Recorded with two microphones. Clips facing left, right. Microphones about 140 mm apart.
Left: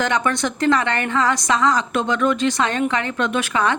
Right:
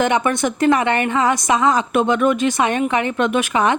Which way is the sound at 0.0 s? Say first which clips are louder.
Right 3 dB; 20° right (ahead or behind).